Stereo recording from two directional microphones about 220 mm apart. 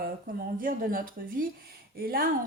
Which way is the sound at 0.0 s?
40° right (ahead or behind).